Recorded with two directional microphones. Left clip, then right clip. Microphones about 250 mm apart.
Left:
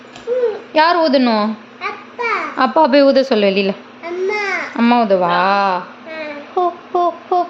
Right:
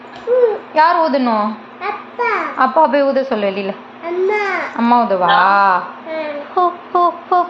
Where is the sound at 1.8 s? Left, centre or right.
Centre.